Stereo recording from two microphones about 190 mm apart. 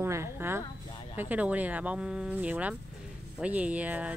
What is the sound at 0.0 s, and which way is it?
Speech, 15° right (ahead or behind).